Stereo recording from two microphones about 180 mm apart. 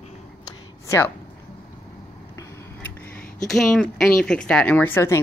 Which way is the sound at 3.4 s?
Centre (ahead or behind).